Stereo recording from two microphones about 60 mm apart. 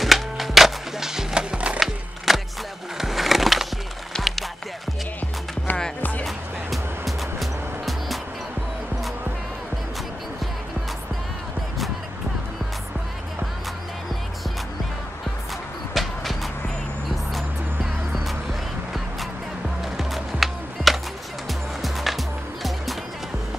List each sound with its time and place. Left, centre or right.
0.0 s wood: centre
1.8 s wood: centre
3.0 s a sound: centre
4.1 s music: centre
6.2 s music: centre
15.9 s music: centre
19.8 s music: centre